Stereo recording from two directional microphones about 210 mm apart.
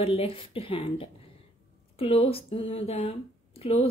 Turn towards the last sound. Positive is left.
turn(degrees=30)  # may be behind; listen again after turning